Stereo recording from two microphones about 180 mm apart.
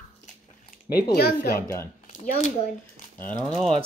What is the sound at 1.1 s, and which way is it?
Speech, 60° left (ahead or behind).